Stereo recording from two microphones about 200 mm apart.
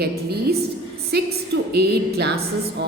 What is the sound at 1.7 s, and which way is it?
A woman's voice, 55° right (ahead or behind).